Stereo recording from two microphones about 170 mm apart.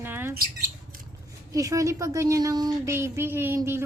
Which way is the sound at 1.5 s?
20° right (ahead or behind).